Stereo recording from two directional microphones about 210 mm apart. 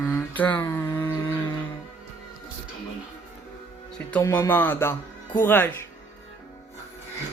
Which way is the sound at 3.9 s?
10° left (ahead or behind).